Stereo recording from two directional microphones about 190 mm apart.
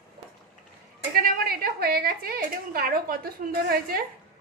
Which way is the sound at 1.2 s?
55° right (ahead or behind).